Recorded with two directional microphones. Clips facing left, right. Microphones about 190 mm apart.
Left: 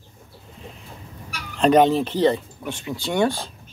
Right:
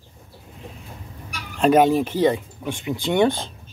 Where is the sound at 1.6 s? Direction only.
10° right (ahead or behind).